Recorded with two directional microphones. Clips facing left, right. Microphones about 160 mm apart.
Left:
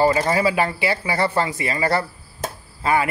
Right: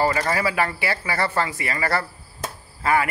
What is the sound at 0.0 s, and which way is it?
A man's voice, 20° left (ahead or behind).